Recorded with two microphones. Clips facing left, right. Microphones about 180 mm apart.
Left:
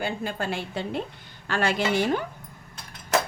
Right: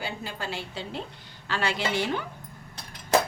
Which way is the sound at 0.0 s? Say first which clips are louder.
Left 5 dB; 50° left (ahead or behind).